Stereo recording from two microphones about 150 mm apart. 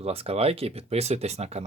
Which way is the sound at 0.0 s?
40° right (ahead or behind).